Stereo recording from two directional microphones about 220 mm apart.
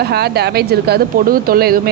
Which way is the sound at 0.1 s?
45° right (ahead or behind).